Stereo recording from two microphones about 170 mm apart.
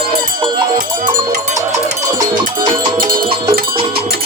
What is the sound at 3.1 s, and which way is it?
Music, 25° right (ahead or behind).